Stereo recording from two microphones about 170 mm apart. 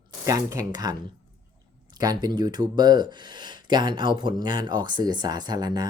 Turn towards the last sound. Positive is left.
turn(degrees=-25)  # may be behind; listen again after turning